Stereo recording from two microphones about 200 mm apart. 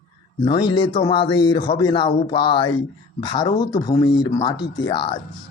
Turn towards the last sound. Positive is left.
turn(degrees=20)  # may be behind; listen again after turning